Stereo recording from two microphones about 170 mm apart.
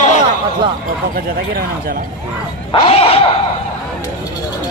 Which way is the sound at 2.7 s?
35° left (ahead or behind).